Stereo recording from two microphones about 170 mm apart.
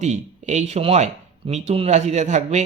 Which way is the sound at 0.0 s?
40° right (ahead or behind).